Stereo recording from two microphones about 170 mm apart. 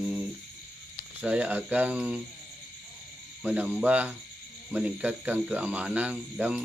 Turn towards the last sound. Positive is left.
turn(degrees=-10)  # may be behind; listen again after turning